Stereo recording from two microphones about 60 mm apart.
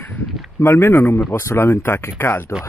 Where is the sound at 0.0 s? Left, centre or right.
Left.